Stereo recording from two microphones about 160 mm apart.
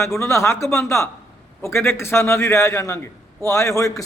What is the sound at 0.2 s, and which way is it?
A man's voice, 15° left (ahead or behind).